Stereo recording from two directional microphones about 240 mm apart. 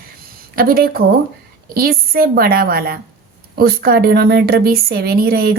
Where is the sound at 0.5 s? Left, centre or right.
Right.